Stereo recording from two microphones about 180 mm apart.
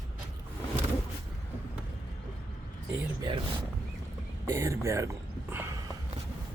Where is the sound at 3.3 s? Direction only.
30° right (ahead or behind).